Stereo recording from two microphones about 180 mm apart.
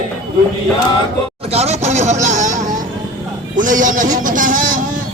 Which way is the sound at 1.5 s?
40° right (ahead or behind).